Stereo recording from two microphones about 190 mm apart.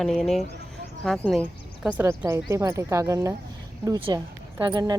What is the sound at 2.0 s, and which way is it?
Speech, 15° right (ahead or behind).